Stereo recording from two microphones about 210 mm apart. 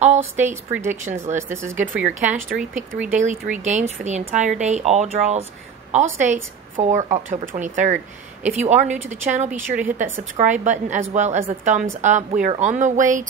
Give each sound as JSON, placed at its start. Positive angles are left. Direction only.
{"t": 0.0, "sound": "a woman's voice", "side_deg": -35}
{"t": 1.5, "sound": "speech", "side_deg": -10}
{"t": 2.0, "sound": "speech", "side_deg": -35}
{"t": 2.9, "sound": "speech", "side_deg": -5}
{"t": 3.5, "sound": "speech", "side_deg": -35}